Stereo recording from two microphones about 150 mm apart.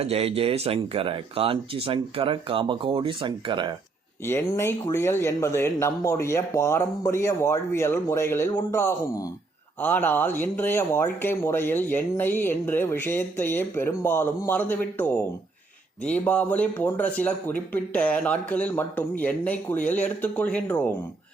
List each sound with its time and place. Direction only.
0.0 s speech: 40° right (ahead or behind)
4.3 s speech: 15° left (ahead or behind)